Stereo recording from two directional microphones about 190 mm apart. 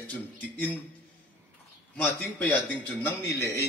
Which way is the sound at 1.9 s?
10° left (ahead or behind).